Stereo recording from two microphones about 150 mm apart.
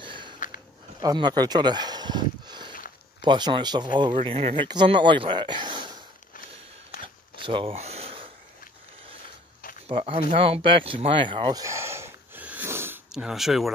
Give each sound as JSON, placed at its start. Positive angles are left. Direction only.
{"t": 0.0, "sound": "sniff", "side_deg": -30}
{"t": 0.9, "sound": "speech", "side_deg": -30}
{"t": 4.2, "sound": "speech", "side_deg": -40}
{"t": 7.4, "sound": "speech", "side_deg": -35}
{"t": 7.7, "sound": "a sound", "side_deg": -45}
{"t": 9.8, "sound": "speech", "side_deg": -40}
{"t": 11.6, "sound": "wheeze", "side_deg": -20}
{"t": 13.1, "sound": "speech", "side_deg": -5}